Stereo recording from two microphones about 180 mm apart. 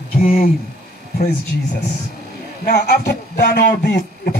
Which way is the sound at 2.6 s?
60° left (ahead or behind).